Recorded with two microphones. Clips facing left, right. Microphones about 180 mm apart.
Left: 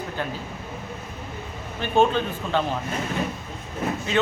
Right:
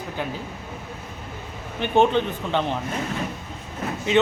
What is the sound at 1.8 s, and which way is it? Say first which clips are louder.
Speech: right 1 dB; 20° right (ahead or behind).